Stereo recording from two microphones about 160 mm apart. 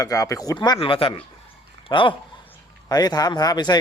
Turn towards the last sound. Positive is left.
turn(degrees=25)  # may be behind; listen again after turning